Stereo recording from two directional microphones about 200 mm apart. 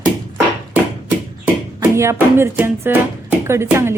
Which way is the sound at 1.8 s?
10° right (ahead or behind).